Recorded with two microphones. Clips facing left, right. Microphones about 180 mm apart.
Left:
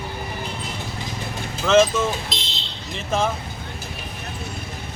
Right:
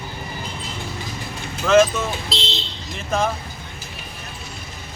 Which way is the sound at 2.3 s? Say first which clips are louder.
Right 5 dB; 30° right (ahead or behind).